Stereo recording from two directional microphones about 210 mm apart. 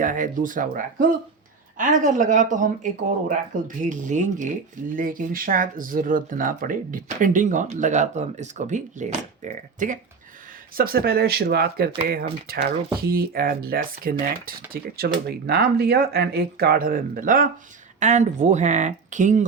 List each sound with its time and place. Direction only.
0.0 s speech: 40° right (ahead or behind)